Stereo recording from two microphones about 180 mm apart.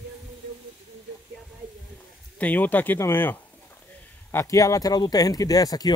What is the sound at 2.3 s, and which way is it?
Speech, 10° left (ahead or behind).